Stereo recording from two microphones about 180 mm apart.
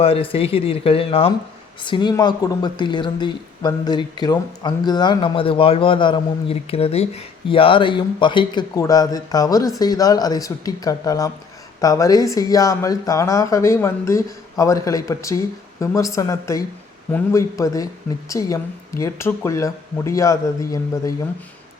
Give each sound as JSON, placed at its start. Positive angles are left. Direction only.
{"t": 0.0, "sound": "speech", "side_deg": 30}